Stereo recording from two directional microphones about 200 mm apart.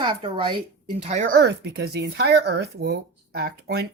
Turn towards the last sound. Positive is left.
turn(degrees=-50)  # may be behind; listen again after turning